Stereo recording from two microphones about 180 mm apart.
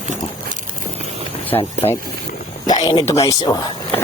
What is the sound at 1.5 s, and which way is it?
Speech, 15° left (ahead or behind).